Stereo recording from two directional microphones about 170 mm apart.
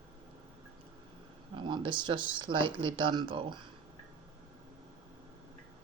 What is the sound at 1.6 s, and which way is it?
Speech, 25° right (ahead or behind).